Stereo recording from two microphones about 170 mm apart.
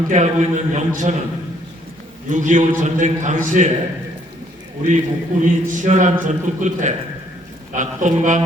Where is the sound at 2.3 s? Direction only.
45° right (ahead or behind).